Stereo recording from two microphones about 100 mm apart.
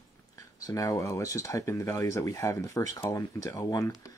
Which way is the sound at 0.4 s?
35° left (ahead or behind).